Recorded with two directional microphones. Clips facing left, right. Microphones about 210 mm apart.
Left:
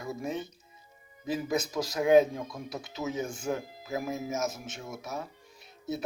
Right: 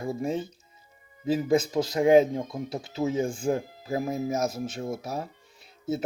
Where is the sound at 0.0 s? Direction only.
30° right (ahead or behind).